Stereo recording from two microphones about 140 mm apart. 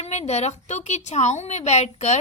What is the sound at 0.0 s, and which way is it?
A woman's voice, 50° left (ahead or behind).